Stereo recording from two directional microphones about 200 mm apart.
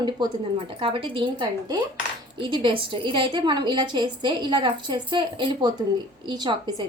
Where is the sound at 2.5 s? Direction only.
25° right (ahead or behind).